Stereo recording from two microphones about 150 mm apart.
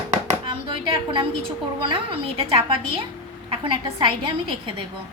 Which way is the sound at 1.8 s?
35° right (ahead or behind).